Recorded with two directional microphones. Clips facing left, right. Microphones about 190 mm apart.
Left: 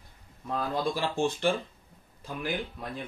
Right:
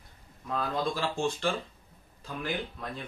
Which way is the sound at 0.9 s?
15° left (ahead or behind).